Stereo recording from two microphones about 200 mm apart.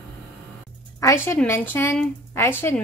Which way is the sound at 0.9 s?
15° left (ahead or behind).